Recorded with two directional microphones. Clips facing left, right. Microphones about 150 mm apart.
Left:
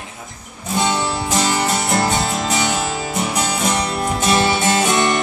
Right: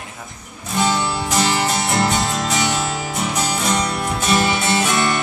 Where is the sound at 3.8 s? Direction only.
25° left (ahead or behind).